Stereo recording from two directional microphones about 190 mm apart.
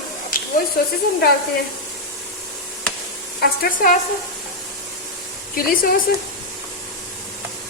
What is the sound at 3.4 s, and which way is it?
Speech, 50° left (ahead or behind).